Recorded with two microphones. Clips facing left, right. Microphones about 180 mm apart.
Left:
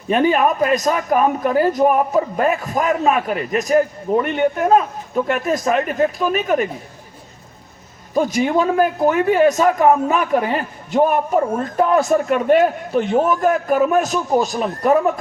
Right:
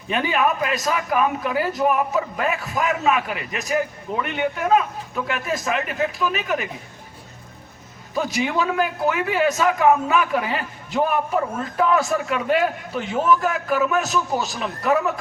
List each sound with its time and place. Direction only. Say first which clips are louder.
0.1 s a man's voice: left 6 dB; 45° left (ahead or behind)
8.1 s a man's voice: left 6 dB; 45° left (ahead or behind)